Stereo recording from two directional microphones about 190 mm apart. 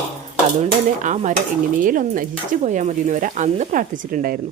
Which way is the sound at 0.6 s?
40° right (ahead or behind).